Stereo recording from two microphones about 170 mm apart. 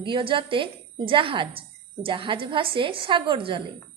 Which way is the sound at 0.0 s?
30° right (ahead or behind).